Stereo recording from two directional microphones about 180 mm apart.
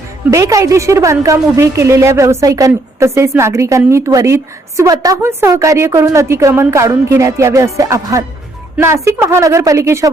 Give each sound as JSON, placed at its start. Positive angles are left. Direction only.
{"t": 0.3, "sound": "a woman's voice", "side_deg": -15}